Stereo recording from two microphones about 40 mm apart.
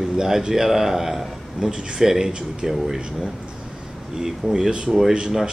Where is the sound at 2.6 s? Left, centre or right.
Centre.